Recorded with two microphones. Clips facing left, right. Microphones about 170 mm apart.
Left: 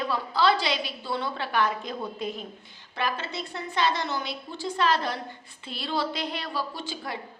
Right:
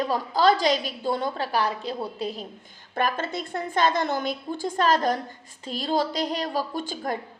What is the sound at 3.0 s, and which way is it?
A woman's voice, 50° right (ahead or behind).